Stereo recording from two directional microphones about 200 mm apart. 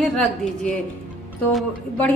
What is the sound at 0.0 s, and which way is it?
A woman's voice, centre (ahead or behind).